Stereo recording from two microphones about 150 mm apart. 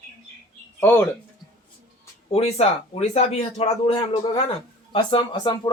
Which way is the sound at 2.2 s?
45° left (ahead or behind).